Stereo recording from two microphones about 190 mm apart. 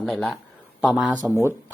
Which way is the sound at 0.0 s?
Centre (ahead or behind).